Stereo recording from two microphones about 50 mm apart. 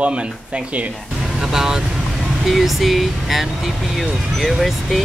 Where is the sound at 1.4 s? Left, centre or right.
Centre.